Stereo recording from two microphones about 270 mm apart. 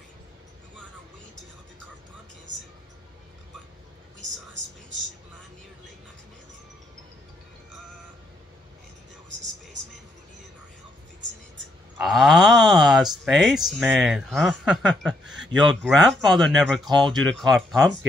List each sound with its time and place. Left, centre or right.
12.0 s speech: centre